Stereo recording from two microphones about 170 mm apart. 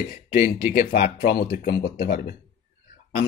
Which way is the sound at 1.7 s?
75° left (ahead or behind).